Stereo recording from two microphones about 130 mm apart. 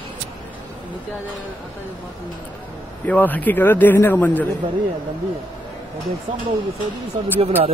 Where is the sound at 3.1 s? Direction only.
15° left (ahead or behind).